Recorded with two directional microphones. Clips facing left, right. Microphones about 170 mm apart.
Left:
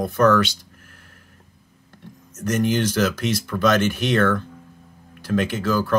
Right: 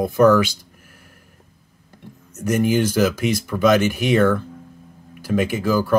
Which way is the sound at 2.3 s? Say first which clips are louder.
Right 3 dB; 10° right (ahead or behind).